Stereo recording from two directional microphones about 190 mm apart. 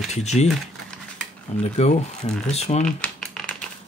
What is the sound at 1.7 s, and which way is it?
Speech, 35° left (ahead or behind).